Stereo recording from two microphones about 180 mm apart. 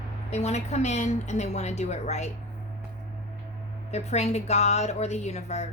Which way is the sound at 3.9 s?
35° left (ahead or behind).